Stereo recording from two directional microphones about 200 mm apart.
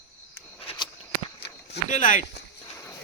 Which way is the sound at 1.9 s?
40° left (ahead or behind).